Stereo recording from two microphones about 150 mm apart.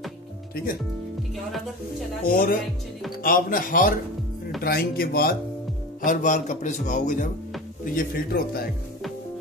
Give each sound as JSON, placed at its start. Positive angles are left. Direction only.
{"t": 2.2, "sound": "speech", "side_deg": 75}
{"t": 4.6, "sound": "speech", "side_deg": 80}
{"t": 6.0, "sound": "a man's voice", "side_deg": 55}
{"t": 7.8, "sound": "speech", "side_deg": 80}